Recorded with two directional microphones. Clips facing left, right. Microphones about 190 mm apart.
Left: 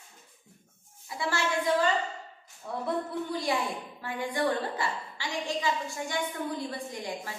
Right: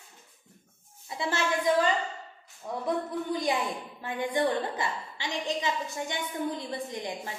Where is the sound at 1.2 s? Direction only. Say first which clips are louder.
Right 1 dB; 20° right (ahead or behind).